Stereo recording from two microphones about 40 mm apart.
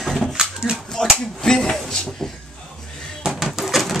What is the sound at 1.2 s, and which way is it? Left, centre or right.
Finger snapping, centre.